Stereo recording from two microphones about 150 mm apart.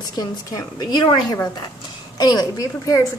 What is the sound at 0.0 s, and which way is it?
A woman's voice, 25° left (ahead or behind).